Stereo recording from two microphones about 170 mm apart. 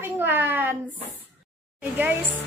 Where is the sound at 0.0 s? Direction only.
10° right (ahead or behind).